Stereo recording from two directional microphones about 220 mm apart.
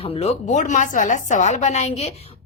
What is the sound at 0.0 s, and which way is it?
A woman's voice, 25° left (ahead or behind).